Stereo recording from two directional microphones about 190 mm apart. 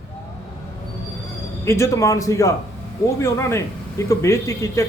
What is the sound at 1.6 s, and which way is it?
A man's voice, 15° left (ahead or behind).